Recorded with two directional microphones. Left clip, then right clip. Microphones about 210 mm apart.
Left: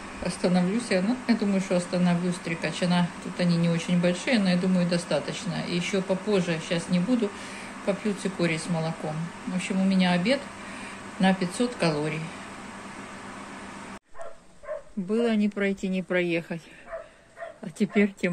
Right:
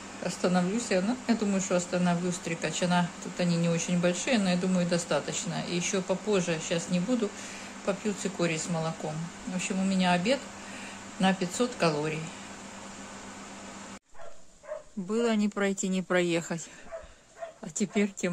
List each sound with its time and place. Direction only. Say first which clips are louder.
0.2 s speech: left 2 dB; 10° right (ahead or behind)
15.1 s speech: left 2 dB; 20° right (ahead or behind)
17.7 s speech: left 5 dB; 10° right (ahead or behind)